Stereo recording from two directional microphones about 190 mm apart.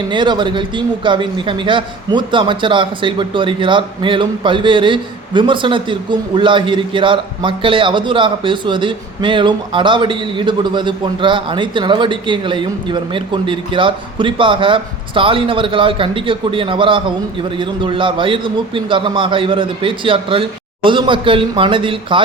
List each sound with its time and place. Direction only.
0.1 s speech: 25° right (ahead or behind)